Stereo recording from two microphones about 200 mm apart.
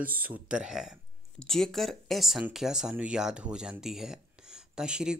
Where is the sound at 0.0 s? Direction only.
10° right (ahead or behind).